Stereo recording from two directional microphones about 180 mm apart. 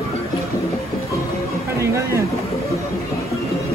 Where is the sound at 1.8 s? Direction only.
15° right (ahead or behind).